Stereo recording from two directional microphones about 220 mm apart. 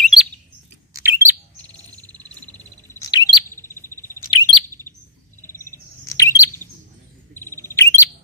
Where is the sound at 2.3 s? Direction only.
10° left (ahead or behind).